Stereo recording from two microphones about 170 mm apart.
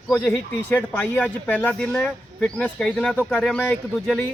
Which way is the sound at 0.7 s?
10° left (ahead or behind).